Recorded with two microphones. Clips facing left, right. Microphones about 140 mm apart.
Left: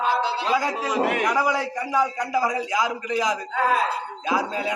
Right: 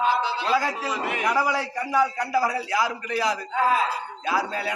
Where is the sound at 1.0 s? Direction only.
65° left (ahead or behind).